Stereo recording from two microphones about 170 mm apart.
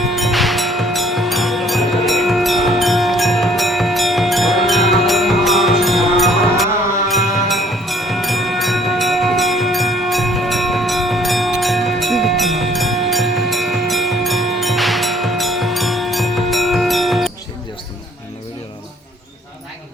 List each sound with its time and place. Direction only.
0.0 s music: centre (ahead or behind)